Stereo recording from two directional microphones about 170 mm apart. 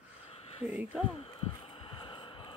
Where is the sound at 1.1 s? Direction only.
30° left (ahead or behind).